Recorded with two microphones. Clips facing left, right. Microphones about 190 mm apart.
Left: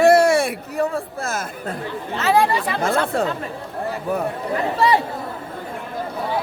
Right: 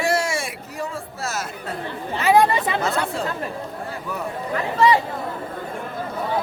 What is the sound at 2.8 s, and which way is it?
Speech, 50° left (ahead or behind).